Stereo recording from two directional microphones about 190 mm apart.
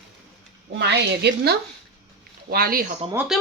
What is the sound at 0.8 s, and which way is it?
Speech, 60° right (ahead or behind).